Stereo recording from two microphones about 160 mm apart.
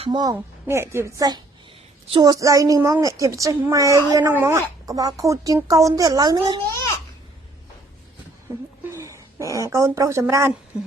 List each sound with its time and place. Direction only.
0.0 s a child's voice: 30° right (ahead or behind)
8.9 s speech: 20° right (ahead or behind)